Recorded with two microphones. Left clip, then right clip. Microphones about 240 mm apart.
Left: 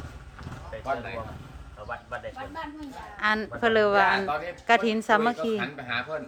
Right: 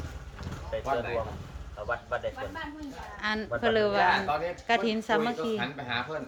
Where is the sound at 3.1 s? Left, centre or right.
Centre.